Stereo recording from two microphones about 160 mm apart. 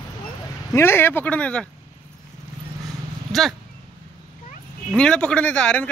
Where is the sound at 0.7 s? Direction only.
15° left (ahead or behind).